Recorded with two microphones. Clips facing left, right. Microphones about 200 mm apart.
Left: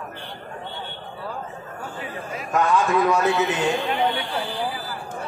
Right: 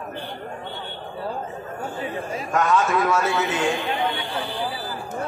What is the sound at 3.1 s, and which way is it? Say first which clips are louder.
Speech: left 2 dB; 15° left (ahead or behind).